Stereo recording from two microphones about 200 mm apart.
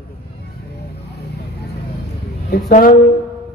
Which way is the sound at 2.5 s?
45° left (ahead or behind).